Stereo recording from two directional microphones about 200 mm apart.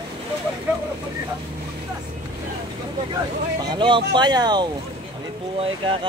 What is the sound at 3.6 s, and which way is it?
Speech, 25° right (ahead or behind).